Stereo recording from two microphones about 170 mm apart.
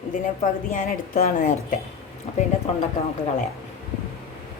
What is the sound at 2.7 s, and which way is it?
Speech, 35° left (ahead or behind).